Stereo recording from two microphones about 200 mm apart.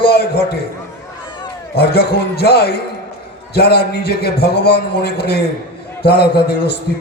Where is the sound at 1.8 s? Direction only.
55° left (ahead or behind).